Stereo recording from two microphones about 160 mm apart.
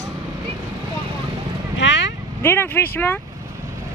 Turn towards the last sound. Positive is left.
turn(degrees=10)  # may be behind; listen again after turning